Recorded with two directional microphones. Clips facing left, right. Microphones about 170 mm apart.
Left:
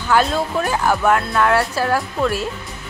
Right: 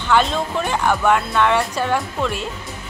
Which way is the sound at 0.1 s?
5° left (ahead or behind).